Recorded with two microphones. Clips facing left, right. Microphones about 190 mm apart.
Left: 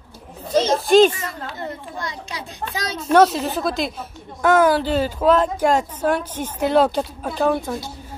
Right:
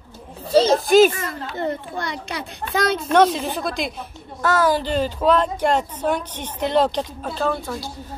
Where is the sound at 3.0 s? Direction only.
5° left (ahead or behind).